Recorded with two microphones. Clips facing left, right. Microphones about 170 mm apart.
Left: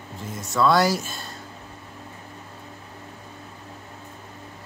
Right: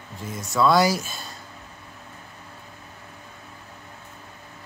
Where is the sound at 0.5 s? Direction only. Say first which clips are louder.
Even; 5° right (ahead or behind).